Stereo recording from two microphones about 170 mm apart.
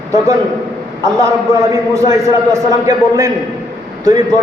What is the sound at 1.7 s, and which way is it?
A man's voice, 20° right (ahead or behind).